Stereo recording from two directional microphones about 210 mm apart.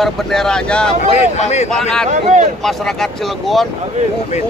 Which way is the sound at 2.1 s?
35° right (ahead or behind).